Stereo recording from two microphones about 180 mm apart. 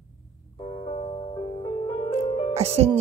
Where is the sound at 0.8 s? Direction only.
35° left (ahead or behind).